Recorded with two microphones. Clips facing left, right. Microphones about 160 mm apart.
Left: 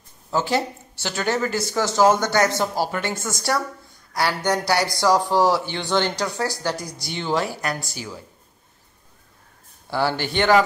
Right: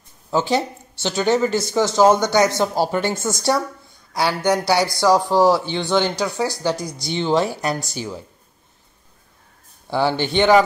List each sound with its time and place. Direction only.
0.3 s speech: 20° right (ahead or behind)
4.1 s speech: 15° right (ahead or behind)
9.8 s speech: 20° right (ahead or behind)